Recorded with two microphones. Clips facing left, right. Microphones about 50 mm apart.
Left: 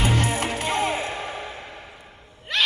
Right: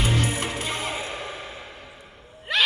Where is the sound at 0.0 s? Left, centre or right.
Left.